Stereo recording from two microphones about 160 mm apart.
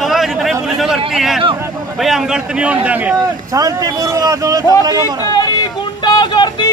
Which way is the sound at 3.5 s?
20° right (ahead or behind).